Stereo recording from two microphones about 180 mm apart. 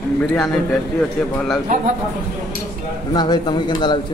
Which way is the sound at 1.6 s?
45° right (ahead or behind).